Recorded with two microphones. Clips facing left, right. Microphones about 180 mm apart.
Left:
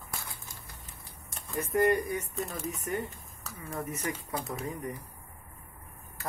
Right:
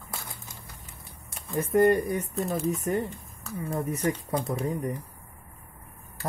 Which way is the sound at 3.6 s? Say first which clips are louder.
Right 7 dB; 35° right (ahead or behind).